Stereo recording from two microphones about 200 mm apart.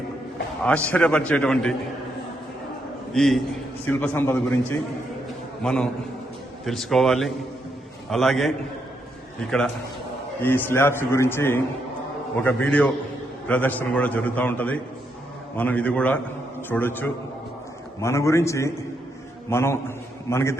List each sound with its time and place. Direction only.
0.6 s a man's voice: 5° left (ahead or behind)
3.1 s a man's voice: centre (ahead or behind)